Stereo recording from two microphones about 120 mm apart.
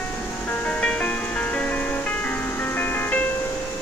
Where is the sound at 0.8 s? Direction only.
10° left (ahead or behind).